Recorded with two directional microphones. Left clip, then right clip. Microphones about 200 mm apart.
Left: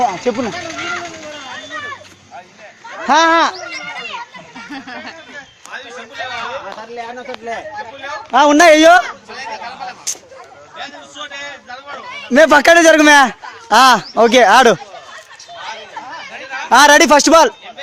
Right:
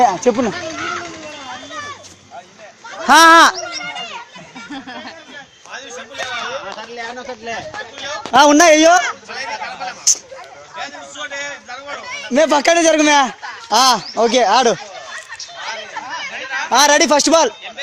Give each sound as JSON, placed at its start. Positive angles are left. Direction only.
{"t": 0.0, "sound": "a man's voice", "side_deg": -20}
{"t": 0.6, "sound": "a sound", "side_deg": 35}
{"t": 3.0, "sound": "speech", "side_deg": -10}
{"t": 4.7, "sound": "a sound", "side_deg": 15}
{"t": 6.7, "sound": "speech", "side_deg": 10}
{"t": 8.3, "sound": "a man's voice", "side_deg": -5}
{"t": 8.6, "sound": "speech", "side_deg": 10}
{"t": 10.8, "sound": "a man's voice", "side_deg": -20}
{"t": 12.3, "sound": "speech", "side_deg": 25}
{"t": 16.6, "sound": "speech", "side_deg": 25}